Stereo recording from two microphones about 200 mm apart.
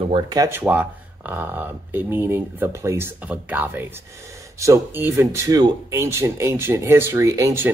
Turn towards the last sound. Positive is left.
turn(degrees=-15)  # may be behind; listen again after turning